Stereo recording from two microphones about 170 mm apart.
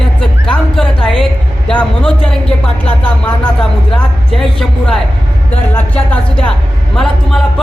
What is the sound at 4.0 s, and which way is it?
Speech, centre (ahead or behind).